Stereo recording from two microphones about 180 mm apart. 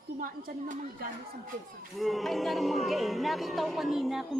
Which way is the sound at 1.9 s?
Centre (ahead or behind).